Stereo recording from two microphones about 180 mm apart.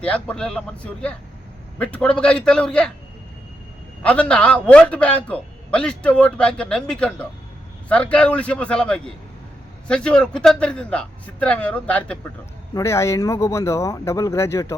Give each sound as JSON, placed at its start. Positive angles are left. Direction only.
{"t": 0.0, "sound": "a man's voice", "side_deg": 5}
{"t": 4.0, "sound": "a man's voice", "side_deg": 5}